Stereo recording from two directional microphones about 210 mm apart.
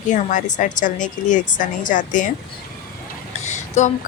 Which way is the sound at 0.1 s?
35° left (ahead or behind).